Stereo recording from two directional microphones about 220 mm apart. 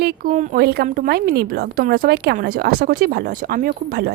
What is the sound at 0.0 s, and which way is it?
A woman's voice, 45° right (ahead or behind).